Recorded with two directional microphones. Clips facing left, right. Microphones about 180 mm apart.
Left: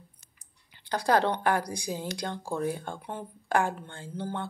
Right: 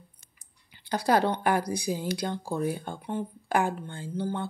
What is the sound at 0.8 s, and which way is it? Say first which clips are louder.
Speech: right 1 dB; 10° right (ahead or behind).